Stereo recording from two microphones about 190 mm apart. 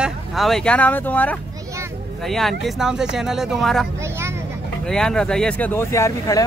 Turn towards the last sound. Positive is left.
turn(degrees=15)  # may be behind; listen again after turning